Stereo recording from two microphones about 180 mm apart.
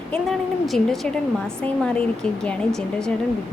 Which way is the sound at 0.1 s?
Centre (ahead or behind).